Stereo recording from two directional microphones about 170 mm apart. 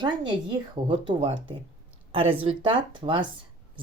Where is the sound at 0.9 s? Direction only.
30° right (ahead or behind).